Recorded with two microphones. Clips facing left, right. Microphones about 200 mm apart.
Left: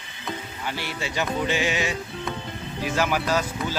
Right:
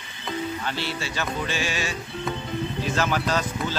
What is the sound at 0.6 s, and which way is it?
Speech, 15° left (ahead or behind).